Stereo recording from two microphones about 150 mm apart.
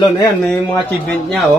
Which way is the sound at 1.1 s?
5° left (ahead or behind).